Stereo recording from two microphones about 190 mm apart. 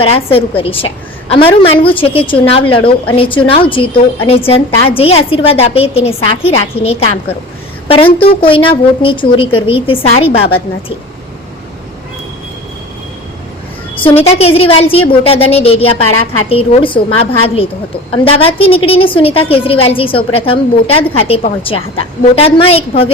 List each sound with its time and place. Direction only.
0.0 s a woman's voice: 30° left (ahead or behind)
8.4 s a woman's voice: 25° left (ahead or behind)
14.0 s a sound: 30° left (ahead or behind)
14.3 s a woman's voice: 30° left (ahead or behind)